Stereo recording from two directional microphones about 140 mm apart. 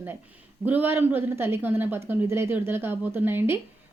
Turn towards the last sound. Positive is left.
turn(degrees=-15)  # may be behind; listen again after turning